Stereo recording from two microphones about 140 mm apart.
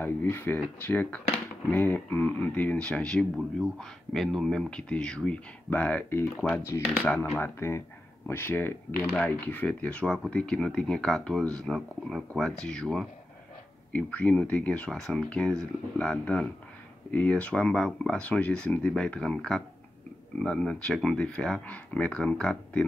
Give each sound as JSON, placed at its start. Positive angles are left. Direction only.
{"t": 0.0, "sound": "speech", "side_deg": 15}